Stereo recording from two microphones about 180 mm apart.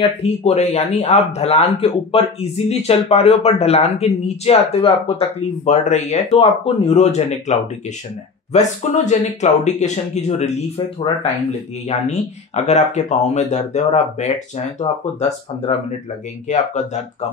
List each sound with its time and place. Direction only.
0.0 s a man's voice: 35° left (ahead or behind)
8.5 s a man's voice: 40° left (ahead or behind)
11.9 s a man's voice: 40° left (ahead or behind)